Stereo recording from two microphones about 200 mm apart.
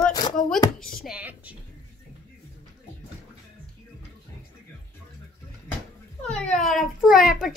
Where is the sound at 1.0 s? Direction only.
5° right (ahead or behind).